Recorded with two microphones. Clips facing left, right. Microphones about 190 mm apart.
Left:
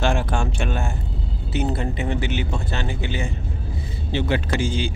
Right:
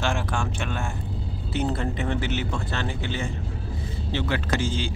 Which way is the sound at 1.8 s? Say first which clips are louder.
Left 2 dB; 10° left (ahead or behind).